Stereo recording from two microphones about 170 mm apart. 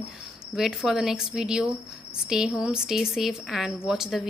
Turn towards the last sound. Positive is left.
turn(degrees=-5)  # may be behind; listen again after turning